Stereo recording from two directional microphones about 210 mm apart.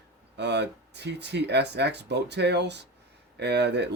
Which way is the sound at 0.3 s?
55° right (ahead or behind).